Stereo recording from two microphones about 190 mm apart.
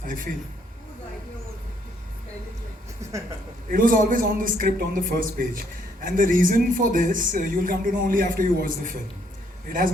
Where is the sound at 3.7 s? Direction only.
45° right (ahead or behind).